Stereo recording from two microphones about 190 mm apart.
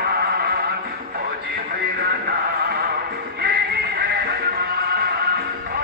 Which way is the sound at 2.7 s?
55° right (ahead or behind).